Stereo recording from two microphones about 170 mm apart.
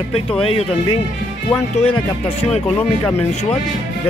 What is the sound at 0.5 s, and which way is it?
Speech, 30° left (ahead or behind).